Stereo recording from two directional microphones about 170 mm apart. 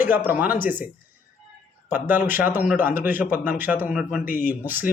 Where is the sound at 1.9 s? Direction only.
10° right (ahead or behind).